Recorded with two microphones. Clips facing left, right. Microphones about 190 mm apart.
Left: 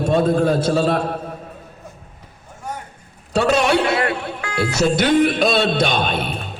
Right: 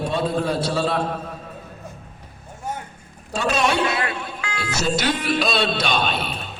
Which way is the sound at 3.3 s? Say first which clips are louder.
Left 5 dB; 65° left (ahead or behind).